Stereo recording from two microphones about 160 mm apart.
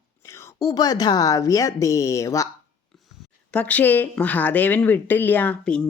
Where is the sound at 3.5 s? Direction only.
10° left (ahead or behind).